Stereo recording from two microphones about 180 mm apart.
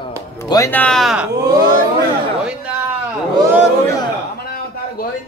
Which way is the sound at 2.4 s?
5° right (ahead or behind).